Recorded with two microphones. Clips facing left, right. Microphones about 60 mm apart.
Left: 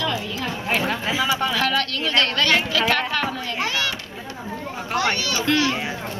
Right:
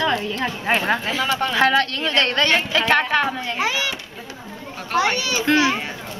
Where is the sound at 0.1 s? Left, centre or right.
Right.